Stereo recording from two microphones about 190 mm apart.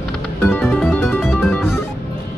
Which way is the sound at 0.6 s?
Centre (ahead or behind).